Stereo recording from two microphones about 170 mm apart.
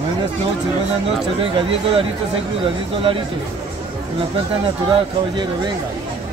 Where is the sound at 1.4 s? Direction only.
30° right (ahead or behind).